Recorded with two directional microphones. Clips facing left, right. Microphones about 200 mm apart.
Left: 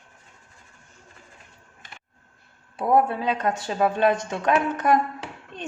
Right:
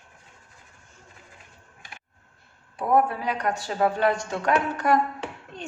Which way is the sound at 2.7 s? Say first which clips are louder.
Left 1 dB; 25° left (ahead or behind).